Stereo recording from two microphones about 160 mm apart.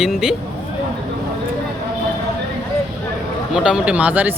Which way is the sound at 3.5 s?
5° right (ahead or behind).